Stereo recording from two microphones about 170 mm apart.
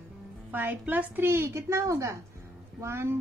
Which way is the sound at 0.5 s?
10° right (ahead or behind).